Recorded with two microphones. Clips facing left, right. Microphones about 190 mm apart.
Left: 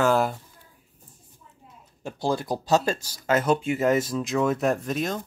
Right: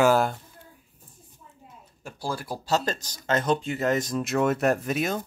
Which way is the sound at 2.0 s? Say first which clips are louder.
Left 6 dB; 20° left (ahead or behind).